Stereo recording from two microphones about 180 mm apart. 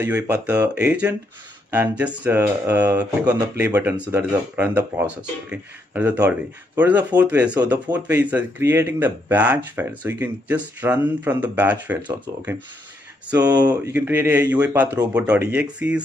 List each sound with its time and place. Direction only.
0.0 s speech: 10° right (ahead or behind)
13.4 s speech: 20° right (ahead or behind)
13.9 s speech: 10° right (ahead or behind)